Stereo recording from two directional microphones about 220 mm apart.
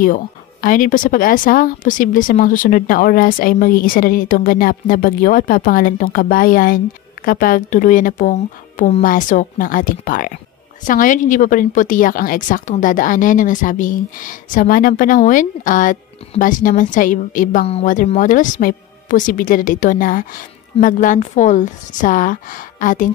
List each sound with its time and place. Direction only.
0.0 s a woman's voice: 40° left (ahead or behind)